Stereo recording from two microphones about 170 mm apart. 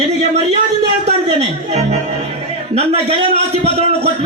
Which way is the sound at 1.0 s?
40° right (ahead or behind).